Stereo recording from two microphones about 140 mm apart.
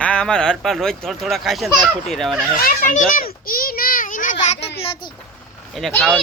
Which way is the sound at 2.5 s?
80° left.